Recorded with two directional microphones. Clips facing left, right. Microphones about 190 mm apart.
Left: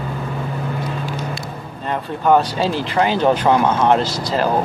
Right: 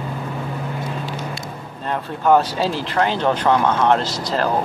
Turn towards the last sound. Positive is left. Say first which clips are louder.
# left 2 dB
turn(degrees=0)  # may be behind; listen again after turning